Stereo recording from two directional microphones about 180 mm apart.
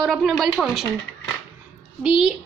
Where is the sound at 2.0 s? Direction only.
5° right (ahead or behind).